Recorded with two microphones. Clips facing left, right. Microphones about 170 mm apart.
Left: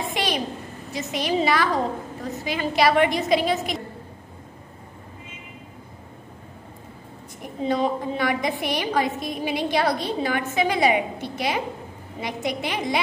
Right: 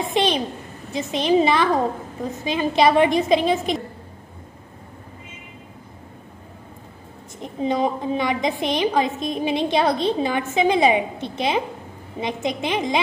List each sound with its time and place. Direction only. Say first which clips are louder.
0.1 s a sound: right 7 dB; 25° right (ahead or behind)
1.1 s a woman's voice: right 5 dB; 20° right (ahead or behind)
7.4 s a woman's voice: right 2 dB; 20° right (ahead or behind)